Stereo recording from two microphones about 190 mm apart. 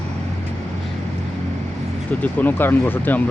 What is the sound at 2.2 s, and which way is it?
Speech, 10° left (ahead or behind).